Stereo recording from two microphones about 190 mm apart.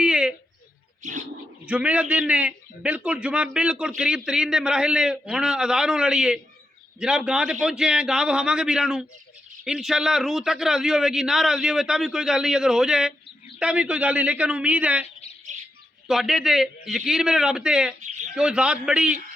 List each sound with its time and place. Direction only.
0.0 s a sound: 5° right (ahead or behind)
1.0 s bird: 40° right (ahead or behind)
1.6 s a man's voice: 5° right (ahead or behind)
15.5 s bird: 40° right (ahead or behind)
16.0 s a man's voice: centre (ahead or behind)
18.0 s bird: 40° right (ahead or behind)
18.3 s a man's voice: 5° right (ahead or behind)